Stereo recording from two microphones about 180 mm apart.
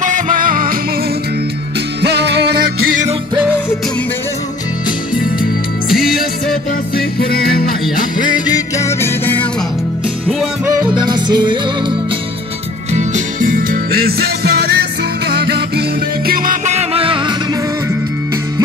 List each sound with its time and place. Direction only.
0.0 s music: 45° right (ahead or behind)
2.0 s music: 70° right (ahead or behind)
5.9 s music: centre (ahead or behind)
7.0 s music: 55° left (ahead or behind)
8.2 s music: 20° left (ahead or behind)
10.2 s music: centre (ahead or behind)
10.8 s music: 25° right (ahead or behind)
12.9 s music: 45° right (ahead or behind); by 15.8 s 65° right (ahead or behind)
16.3 s music: 45° right (ahead or behind); by 17.4 s 30° right (ahead or behind)